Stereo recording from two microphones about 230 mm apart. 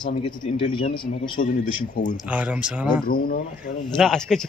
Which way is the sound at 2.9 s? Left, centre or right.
Left.